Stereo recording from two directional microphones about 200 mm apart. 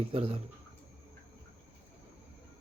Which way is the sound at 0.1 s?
30° right (ahead or behind).